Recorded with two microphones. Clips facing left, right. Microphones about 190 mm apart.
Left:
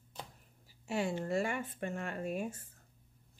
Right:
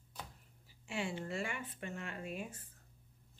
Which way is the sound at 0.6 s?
40° left (ahead or behind).